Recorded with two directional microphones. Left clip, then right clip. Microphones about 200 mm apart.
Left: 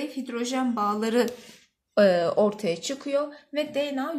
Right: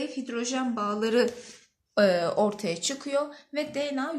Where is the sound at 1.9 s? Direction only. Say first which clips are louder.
Left 3 dB; 20° left (ahead or behind).